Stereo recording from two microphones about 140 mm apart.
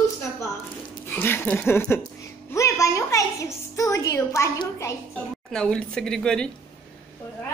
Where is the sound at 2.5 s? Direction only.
20° left (ahead or behind).